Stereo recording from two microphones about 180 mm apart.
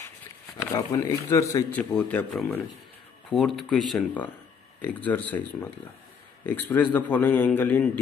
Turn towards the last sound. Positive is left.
turn(degrees=10)  # may be behind; listen again after turning